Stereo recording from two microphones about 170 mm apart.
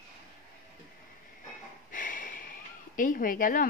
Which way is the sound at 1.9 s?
50° left (ahead or behind).